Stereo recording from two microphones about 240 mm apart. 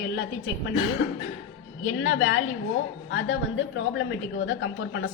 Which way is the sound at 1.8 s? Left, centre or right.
Left.